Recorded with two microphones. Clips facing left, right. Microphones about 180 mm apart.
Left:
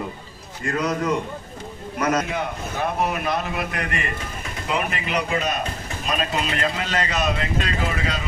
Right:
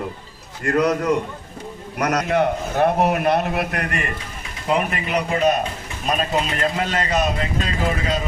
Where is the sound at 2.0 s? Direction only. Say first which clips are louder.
Right 4 dB; 70° right (ahead or behind).